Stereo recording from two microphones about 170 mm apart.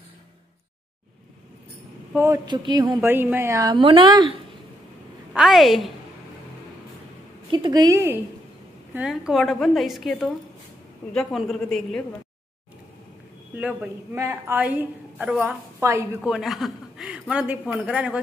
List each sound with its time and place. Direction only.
2.1 s a woman's voice: 15° right (ahead or behind)
2.4 s a woman's voice: 25° right (ahead or behind)
3.0 s a woman's voice: 10° right (ahead or behind)
5.3 s a woman's voice: centre (ahead or behind)
7.5 s a woman's voice: 25° right (ahead or behind)
8.9 s a woman's voice: 5° right (ahead or behind)
13.6 s a woman's voice: 10° right (ahead or behind)
16.2 s speech: centre (ahead or behind)